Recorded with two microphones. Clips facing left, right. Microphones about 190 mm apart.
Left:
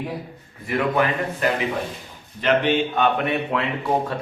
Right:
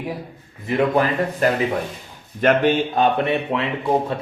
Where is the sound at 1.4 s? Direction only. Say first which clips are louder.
Right 3 dB; 40° right (ahead or behind).